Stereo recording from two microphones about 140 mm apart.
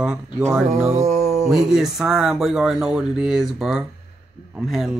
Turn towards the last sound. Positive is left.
turn(degrees=0)  # may be behind; listen again after turning